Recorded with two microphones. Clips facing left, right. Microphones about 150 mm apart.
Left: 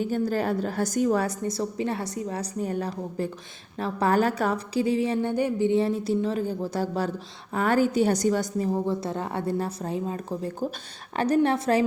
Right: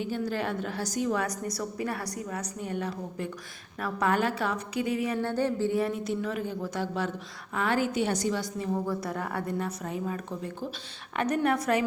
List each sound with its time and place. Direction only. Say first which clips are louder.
0.0 s a woman's voice: left 5 dB; 40° left (ahead or behind)
0.8 s a woman's voice: left 5 dB; 50° left (ahead or behind); by 5.2 s 30° left (ahead or behind)
5.2 s a woman's voice: left 3 dB; 15° left (ahead or behind); by 11.9 s 30° left (ahead or behind)